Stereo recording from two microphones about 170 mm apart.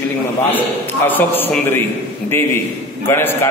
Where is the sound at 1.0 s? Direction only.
10° left (ahead or behind).